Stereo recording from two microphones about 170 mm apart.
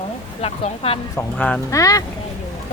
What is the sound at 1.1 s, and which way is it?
Speech, 10° left (ahead or behind).